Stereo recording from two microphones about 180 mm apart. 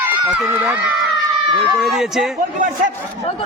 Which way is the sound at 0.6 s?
10° right (ahead or behind).